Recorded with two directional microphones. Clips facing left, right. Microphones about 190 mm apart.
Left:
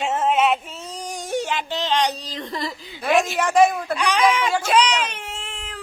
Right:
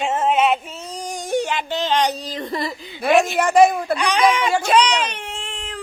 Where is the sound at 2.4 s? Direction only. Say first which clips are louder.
Right 2 dB; 5° right (ahead or behind).